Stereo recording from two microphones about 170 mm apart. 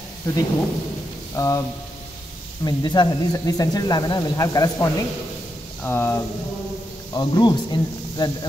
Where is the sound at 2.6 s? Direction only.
25° left (ahead or behind).